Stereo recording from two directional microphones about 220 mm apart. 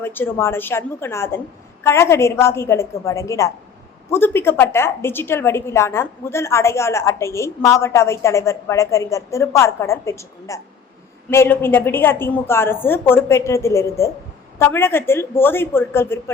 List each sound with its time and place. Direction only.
0.0 s a woman's voice: 10° left (ahead or behind)